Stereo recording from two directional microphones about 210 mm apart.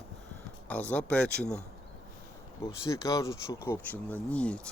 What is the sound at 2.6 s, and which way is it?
Speech, 15° left (ahead or behind).